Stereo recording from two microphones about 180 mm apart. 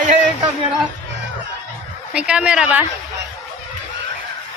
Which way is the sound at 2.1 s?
5° right (ahead or behind).